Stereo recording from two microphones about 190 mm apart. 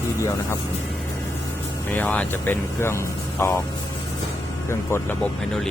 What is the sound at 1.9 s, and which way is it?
Speech, 10° left (ahead or behind).